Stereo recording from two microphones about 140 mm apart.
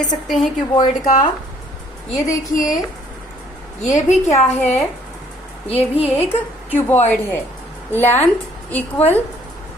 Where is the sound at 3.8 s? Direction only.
60° left (ahead or behind).